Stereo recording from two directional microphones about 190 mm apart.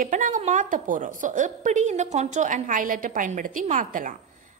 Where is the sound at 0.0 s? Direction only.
40° right (ahead or behind).